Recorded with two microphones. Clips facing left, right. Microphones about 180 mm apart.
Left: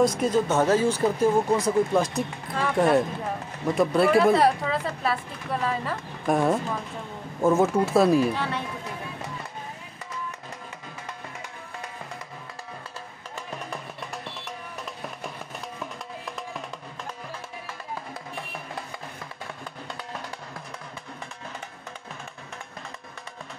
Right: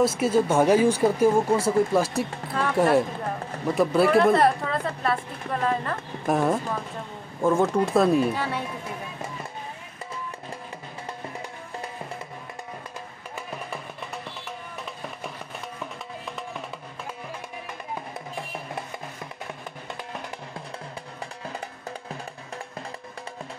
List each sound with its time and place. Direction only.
0.0 s speech: 5° right (ahead or behind)
13.7 s music: centre (ahead or behind)
15.8 s music: centre (ahead or behind)
17.9 s music: 20° right (ahead or behind)